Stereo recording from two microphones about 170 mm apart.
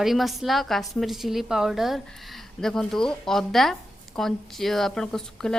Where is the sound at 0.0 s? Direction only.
Centre (ahead or behind).